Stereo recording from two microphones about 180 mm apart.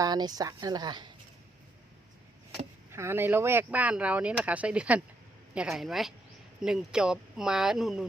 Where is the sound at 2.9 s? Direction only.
15° right (ahead or behind).